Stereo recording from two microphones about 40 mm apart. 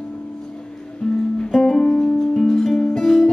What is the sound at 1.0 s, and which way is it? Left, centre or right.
Music, centre.